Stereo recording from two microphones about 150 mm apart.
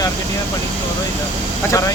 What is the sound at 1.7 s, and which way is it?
Speech, 20° left (ahead or behind).